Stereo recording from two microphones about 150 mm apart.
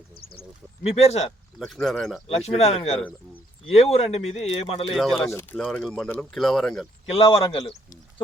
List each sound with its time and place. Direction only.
0.9 s speech: 45° left (ahead or behind)
1.5 s speech: centre (ahead or behind)
2.2 s speech: 45° left (ahead or behind)
3.0 s speech: 10° left (ahead or behind)
3.7 s speech: 45° left (ahead or behind)
4.9 s speech: centre (ahead or behind)
5.3 s speech: 15° left (ahead or behind)
7.1 s a man's voice: 40° left (ahead or behind)